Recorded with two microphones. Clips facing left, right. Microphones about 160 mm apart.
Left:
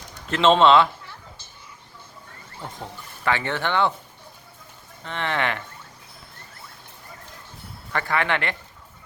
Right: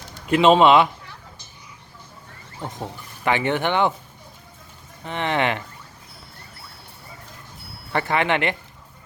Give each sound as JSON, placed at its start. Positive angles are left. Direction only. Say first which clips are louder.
{"t": 0.3, "sound": "speech", "louder": "right 2 dB", "side_deg": -10}
{"t": 2.6, "sound": "speech", "louder": "right 4 dB", "side_deg": -20}
{"t": 5.0, "sound": "speech", "louder": "right 3 dB", "side_deg": -15}
{"t": 7.9, "sound": "speech", "louder": "right 3 dB", "side_deg": -20}